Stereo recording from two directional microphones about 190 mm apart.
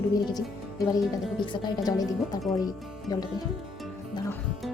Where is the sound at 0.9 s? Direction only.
Centre (ahead or behind).